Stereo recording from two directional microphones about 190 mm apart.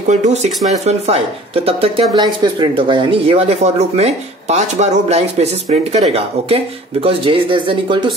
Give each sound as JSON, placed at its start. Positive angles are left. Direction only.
{"t": 0.1, "sound": "speech", "side_deg": -35}